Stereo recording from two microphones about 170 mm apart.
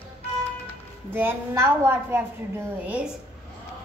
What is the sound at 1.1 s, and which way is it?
A woman's voice, 15° right (ahead or behind).